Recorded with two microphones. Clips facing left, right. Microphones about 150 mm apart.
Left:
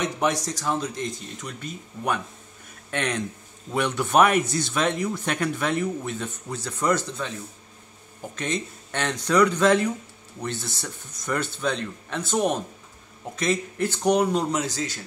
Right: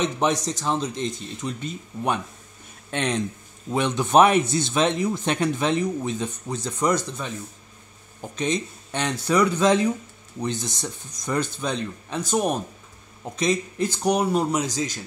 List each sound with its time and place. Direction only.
0.0 s speech: 20° right (ahead or behind)
8.4 s speech: 15° right (ahead or behind)